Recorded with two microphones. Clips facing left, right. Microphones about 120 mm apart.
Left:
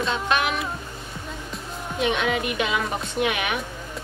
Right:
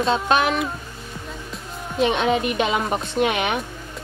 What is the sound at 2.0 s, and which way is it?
A woman's voice, 30° right (ahead or behind).